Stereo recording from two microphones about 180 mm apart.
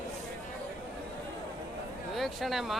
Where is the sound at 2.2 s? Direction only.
Centre (ahead or behind).